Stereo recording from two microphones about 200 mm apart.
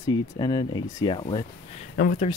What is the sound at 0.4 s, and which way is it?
Speech, 20° left (ahead or behind).